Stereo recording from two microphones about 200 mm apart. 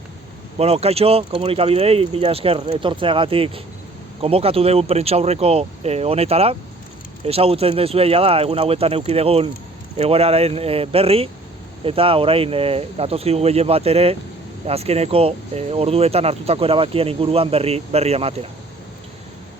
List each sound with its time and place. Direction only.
0.6 s speech: 30° right (ahead or behind)